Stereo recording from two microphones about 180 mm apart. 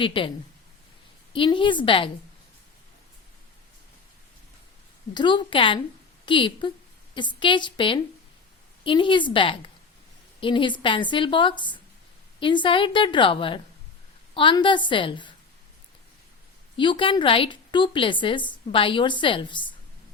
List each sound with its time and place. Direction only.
0.0 s a woman's voice: 30° left (ahead or behind)
1.3 s a woman's voice: 30° left (ahead or behind)
5.1 s a woman's voice: 25° left (ahead or behind)
16.7 s a woman's voice: 25° left (ahead or behind)